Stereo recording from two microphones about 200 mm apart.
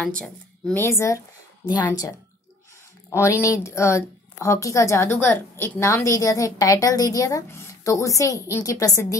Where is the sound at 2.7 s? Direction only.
15° left (ahead or behind).